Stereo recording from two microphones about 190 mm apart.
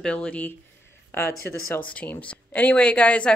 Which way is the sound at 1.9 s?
10° left (ahead or behind).